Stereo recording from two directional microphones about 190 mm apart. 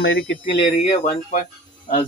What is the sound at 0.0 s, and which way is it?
Speech, 75° left (ahead or behind).